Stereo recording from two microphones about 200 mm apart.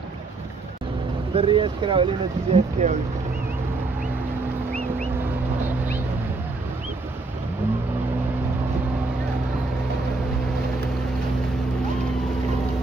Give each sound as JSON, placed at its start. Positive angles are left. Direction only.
{"t": 1.3, "sound": "speech", "side_deg": -25}
{"t": 2.5, "sound": "speech", "side_deg": -35}